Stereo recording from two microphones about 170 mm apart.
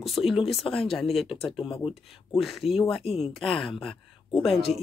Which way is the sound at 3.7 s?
35° left (ahead or behind).